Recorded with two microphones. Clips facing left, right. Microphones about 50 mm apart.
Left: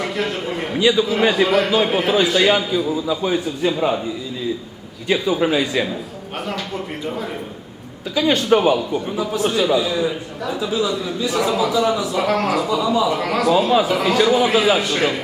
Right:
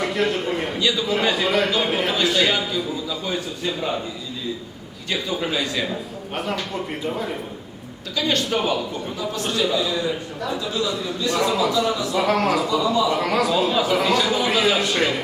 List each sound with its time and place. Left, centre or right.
0.0 s a man's voice: centre
0.8 s a man's voice: centre
1.5 s a man's voice: centre
5.0 s a man's voice: centre
5.9 s a man's voice: centre
8.1 s a man's voice: centre